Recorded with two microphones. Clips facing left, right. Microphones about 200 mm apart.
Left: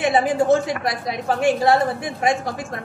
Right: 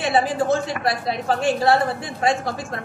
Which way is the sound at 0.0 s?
20° left (ahead or behind).